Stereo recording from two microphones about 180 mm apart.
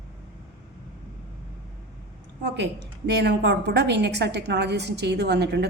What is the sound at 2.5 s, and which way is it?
A woman's voice, 70° right (ahead or behind).